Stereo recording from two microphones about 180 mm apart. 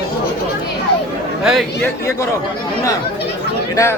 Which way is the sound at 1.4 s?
Centre (ahead or behind).